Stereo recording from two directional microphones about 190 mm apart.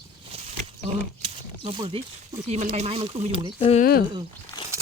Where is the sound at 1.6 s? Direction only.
30° right (ahead or behind).